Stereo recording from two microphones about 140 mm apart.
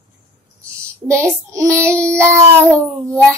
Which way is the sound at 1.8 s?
10° left (ahead or behind).